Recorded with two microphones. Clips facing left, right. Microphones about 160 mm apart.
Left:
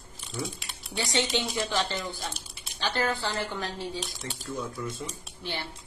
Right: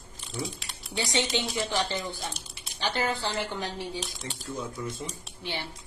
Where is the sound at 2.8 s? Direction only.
15° right (ahead or behind).